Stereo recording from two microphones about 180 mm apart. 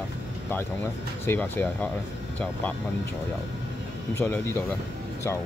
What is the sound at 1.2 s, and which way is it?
Speech, 10° left (ahead or behind).